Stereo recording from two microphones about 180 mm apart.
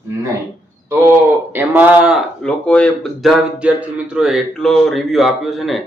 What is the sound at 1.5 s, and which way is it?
Speech, 10° right (ahead or behind).